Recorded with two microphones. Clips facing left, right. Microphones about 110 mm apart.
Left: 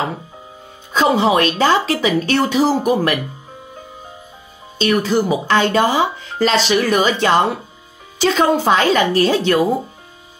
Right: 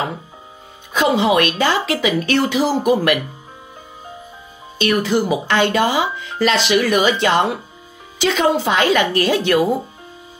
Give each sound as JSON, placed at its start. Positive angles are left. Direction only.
{"t": 0.9, "sound": "speech", "side_deg": 35}
{"t": 4.7, "sound": "speech", "side_deg": 35}